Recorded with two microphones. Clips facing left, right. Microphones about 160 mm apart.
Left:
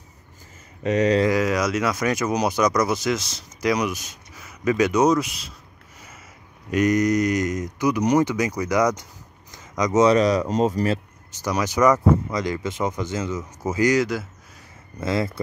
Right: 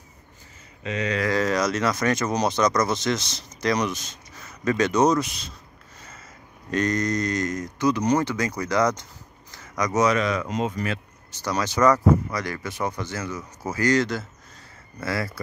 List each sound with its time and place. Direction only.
0.8 s speech: 40° left (ahead or behind)
1.2 s speech: 10° left (ahead or behind)
6.7 s speech: 10° left (ahead or behind)
9.5 s a sound: 20° left (ahead or behind)
10.0 s speech: 35° left (ahead or behind)
11.4 s speech: 15° left (ahead or behind)
15.0 s speech: 20° left (ahead or behind)